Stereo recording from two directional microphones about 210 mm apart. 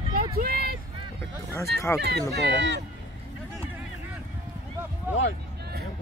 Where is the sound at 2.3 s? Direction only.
55° right (ahead or behind).